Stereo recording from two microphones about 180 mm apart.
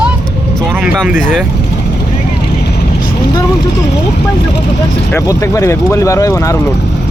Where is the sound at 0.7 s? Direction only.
5° right (ahead or behind).